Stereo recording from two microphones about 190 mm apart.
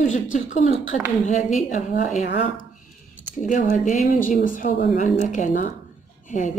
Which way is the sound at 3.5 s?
45° left (ahead or behind).